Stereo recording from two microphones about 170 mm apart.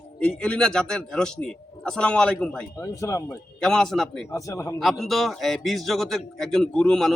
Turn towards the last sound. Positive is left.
turn(degrees=5)  # may be behind; listen again after turning